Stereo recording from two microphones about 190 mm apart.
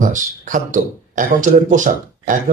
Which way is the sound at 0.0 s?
45° right (ahead or behind).